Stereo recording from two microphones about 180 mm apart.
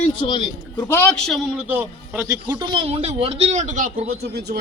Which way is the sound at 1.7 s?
10° right (ahead or behind).